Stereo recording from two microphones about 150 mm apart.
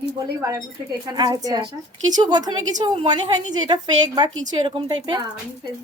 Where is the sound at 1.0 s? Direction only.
25° right (ahead or behind).